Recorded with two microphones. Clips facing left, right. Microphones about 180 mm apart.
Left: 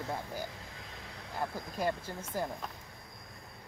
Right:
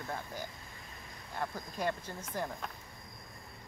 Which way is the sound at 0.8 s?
90° left.